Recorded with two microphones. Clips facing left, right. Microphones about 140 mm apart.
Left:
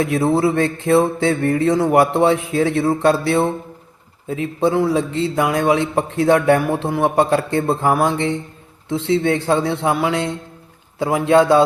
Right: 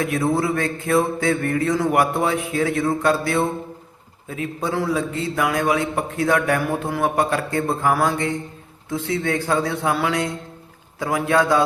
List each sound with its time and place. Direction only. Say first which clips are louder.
0.0 s a man's voice: left 4 dB; 30° left (ahead or behind)